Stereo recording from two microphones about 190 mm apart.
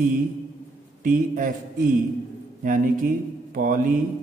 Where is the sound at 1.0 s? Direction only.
45° right (ahead or behind).